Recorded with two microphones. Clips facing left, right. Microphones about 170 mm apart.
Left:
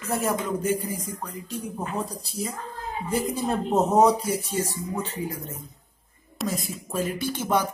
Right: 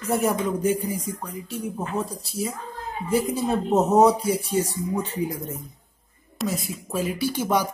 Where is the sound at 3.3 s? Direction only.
Centre (ahead or behind).